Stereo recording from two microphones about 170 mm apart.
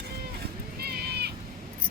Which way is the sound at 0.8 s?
65° right (ahead or behind).